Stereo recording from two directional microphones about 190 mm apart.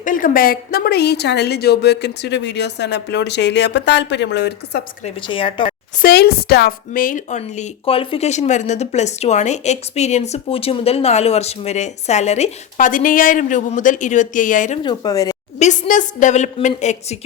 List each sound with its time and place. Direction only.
0.0 s a woman's voice: 45° left (ahead or behind); by 4.8 s 60° left (ahead or behind)
5.0 s speech: 25° left (ahead or behind)
6.0 s a woman's voice: 55° left (ahead or behind)
14.8 s speech: 20° left (ahead or behind)
15.5 s a woman's voice: 40° left (ahead or behind)